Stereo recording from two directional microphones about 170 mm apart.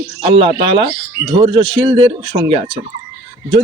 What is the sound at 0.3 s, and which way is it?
Speech, 30° right (ahead or behind).